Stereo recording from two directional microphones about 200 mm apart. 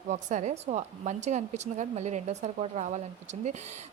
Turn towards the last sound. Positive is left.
turn(degrees=-35)  # may be behind; listen again after turning